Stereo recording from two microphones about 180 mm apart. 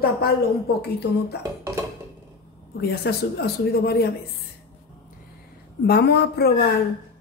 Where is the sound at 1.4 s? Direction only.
10° right (ahead or behind).